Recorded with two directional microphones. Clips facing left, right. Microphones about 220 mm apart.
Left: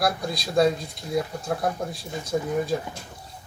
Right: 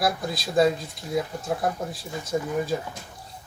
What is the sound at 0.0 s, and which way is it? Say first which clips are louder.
Speech: even; centre (ahead or behind).